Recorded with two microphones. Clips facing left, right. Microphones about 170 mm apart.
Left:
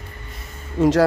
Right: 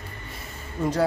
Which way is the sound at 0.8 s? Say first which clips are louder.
Left 8 dB; 90° left.